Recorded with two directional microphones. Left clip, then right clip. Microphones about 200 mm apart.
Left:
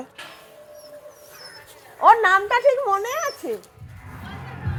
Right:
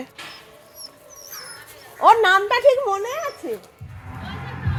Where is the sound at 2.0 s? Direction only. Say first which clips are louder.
Right 1 dB; 10° right (ahead or behind).